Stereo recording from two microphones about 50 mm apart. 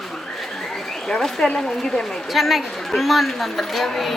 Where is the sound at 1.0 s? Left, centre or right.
Centre.